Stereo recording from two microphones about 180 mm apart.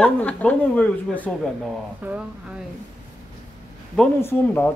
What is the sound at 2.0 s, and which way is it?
Speech, 10° right (ahead or behind).